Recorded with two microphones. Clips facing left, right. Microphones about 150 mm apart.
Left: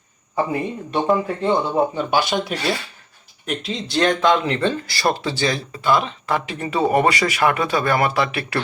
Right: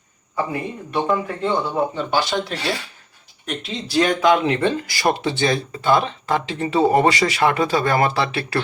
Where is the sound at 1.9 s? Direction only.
15° left (ahead or behind).